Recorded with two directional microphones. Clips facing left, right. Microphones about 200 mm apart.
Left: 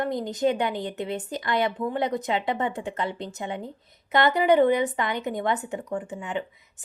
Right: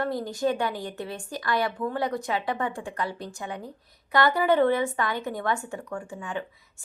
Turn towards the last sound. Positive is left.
turn(degrees=20)  # may be behind; listen again after turning